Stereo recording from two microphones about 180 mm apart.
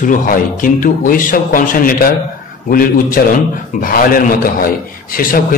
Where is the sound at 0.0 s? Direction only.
50° left (ahead or behind).